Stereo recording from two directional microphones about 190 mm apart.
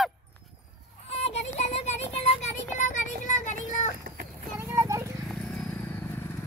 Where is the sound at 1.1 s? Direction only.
35° left (ahead or behind).